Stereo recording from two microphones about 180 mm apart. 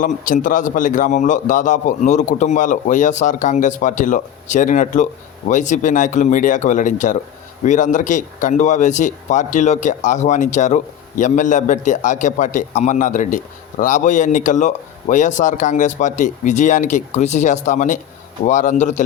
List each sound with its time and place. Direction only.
0.0 s speech: 45° left (ahead or behind)